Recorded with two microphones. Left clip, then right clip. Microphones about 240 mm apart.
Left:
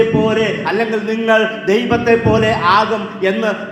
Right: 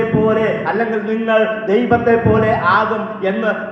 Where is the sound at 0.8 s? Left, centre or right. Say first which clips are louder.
Left 1 dB; left.